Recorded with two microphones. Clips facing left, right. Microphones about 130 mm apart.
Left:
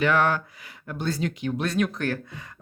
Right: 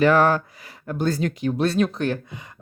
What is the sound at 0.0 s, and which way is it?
Speech, 40° right (ahead or behind).